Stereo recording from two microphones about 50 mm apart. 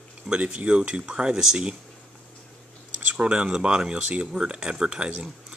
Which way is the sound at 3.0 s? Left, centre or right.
Right.